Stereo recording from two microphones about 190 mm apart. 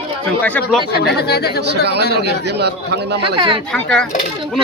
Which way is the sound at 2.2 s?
60° right (ahead or behind).